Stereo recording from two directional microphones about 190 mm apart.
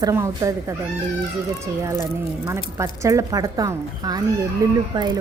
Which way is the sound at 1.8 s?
15° right (ahead or behind).